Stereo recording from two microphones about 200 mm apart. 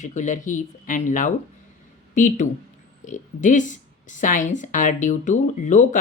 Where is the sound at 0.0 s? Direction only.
40° left (ahead or behind).